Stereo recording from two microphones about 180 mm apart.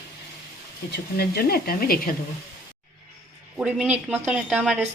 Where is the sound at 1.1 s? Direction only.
60° left (ahead or behind).